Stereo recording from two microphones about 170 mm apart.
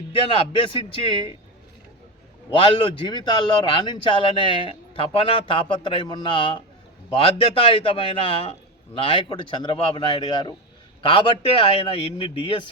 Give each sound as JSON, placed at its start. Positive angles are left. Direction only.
{"t": 0.1, "sound": "a man's voice", "side_deg": 30}
{"t": 2.5, "sound": "a man's voice", "side_deg": 30}